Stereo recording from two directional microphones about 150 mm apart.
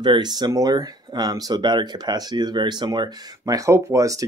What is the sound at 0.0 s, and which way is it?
Speech, 30° right (ahead or behind).